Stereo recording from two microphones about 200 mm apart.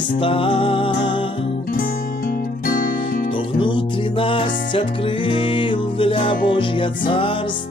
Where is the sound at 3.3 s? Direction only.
25° left (ahead or behind).